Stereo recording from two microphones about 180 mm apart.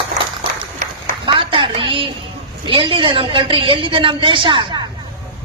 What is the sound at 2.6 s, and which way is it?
A woman's voice, 30° right (ahead or behind).